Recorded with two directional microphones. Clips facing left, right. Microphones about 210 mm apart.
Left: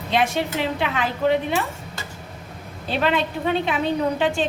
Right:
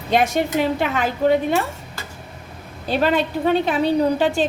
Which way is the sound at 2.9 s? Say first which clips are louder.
Right 3 dB; 40° right (ahead or behind).